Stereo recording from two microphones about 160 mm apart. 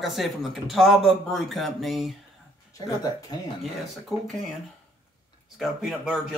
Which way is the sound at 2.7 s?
20° left (ahead or behind).